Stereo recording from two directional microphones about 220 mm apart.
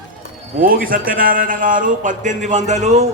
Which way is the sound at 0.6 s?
40° right (ahead or behind).